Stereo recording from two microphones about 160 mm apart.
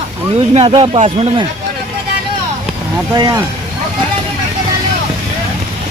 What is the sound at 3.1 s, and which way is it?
Speech, 25° right (ahead or behind).